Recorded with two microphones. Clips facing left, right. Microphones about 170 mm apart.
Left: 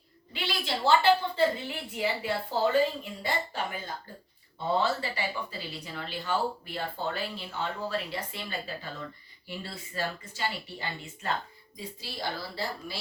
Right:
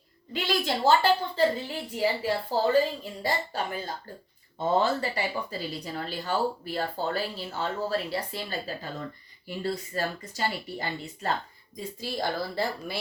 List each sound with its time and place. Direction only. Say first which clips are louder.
0.3 s a woman's voice: right 5 dB; 45° right (ahead or behind)
11.8 s a woman's voice: right 6 dB; 50° right (ahead or behind)